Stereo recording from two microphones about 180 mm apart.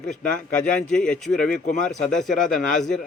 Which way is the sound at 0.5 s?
5° left (ahead or behind).